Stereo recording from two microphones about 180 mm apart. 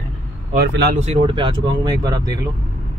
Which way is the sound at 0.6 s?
60° right (ahead or behind).